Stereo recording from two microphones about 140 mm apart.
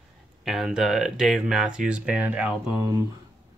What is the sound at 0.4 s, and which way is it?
Speech, 5° right (ahead or behind).